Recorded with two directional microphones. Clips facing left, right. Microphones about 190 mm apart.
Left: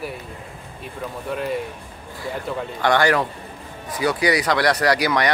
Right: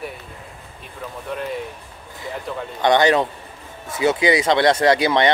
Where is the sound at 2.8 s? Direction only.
20° right (ahead or behind).